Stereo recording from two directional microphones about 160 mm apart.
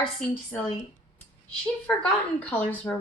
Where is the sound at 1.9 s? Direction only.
5° left (ahead or behind).